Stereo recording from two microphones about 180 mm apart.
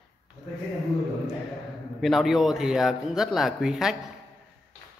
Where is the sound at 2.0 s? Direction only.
Centre (ahead or behind).